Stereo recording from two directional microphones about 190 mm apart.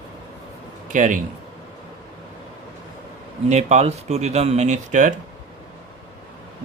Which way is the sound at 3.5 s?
35° right (ahead or behind).